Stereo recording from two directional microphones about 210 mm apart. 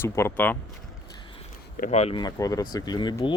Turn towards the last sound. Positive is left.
turn(degrees=20)  # may be behind; listen again after turning